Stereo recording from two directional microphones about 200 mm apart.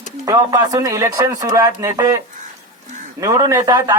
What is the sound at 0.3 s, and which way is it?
Speech, 15° right (ahead or behind).